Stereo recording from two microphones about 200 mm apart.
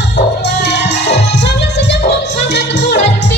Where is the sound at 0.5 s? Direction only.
60° left (ahead or behind).